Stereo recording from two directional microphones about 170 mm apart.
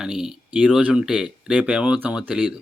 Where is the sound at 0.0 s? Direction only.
5° right (ahead or behind).